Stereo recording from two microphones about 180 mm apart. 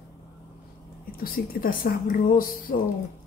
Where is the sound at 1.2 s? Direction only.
55° left (ahead or behind).